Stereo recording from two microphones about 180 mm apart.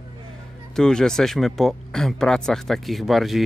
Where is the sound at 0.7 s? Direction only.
5° left (ahead or behind).